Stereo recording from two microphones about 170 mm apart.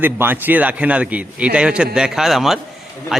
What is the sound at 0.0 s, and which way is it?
A man's voice, 10° right (ahead or behind).